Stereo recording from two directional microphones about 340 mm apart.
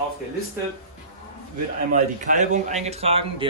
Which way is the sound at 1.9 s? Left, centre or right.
Right.